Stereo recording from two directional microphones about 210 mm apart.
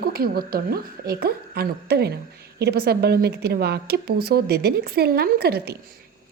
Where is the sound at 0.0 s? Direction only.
45° right (ahead or behind).